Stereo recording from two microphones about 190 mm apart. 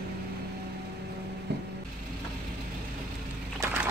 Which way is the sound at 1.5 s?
60° right (ahead or behind).